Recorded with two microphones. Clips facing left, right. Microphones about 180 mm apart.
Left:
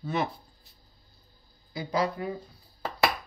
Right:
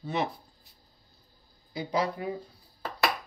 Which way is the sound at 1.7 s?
20° right (ahead or behind).